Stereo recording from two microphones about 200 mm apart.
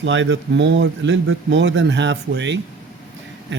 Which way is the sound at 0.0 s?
65° right (ahead or behind).